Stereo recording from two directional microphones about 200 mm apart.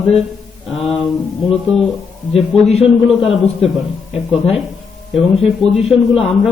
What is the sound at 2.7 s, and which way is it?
Speech, 30° left (ahead or behind).